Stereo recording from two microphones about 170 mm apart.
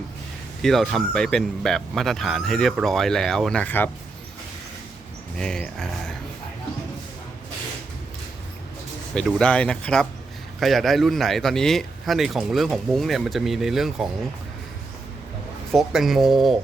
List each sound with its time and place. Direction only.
0.6 s speech: centre (ahead or behind)
5.4 s speech: 5° left (ahead or behind)
9.1 s speech: 5° left (ahead or behind)
15.7 s speech: centre (ahead or behind)